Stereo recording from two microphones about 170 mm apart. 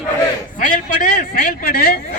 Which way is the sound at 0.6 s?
55° left (ahead or behind).